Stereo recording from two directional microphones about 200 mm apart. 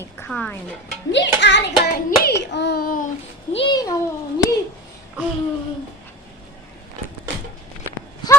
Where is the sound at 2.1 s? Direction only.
55° left (ahead or behind).